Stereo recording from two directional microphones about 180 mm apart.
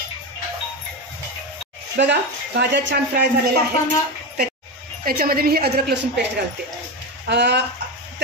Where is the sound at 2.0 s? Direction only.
75° right (ahead or behind).